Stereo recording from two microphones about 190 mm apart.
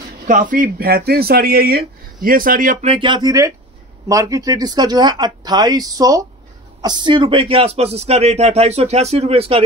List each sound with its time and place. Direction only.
0.3 s speech: 45° right (ahead or behind)
2.9 s speech: 25° right (ahead or behind)